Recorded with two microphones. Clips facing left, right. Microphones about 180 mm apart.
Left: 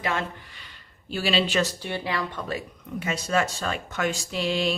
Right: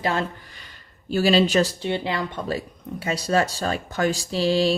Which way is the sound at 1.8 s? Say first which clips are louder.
Right 4 dB; 25° right (ahead or behind).